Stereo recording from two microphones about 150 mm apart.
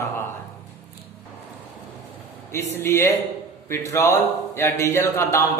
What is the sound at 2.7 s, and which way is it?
A man's voice, 15° left (ahead or behind).